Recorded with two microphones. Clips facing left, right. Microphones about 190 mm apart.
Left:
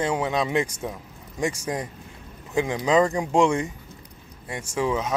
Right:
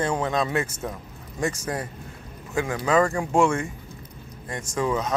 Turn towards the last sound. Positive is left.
turn(degrees=10)  # may be behind; listen again after turning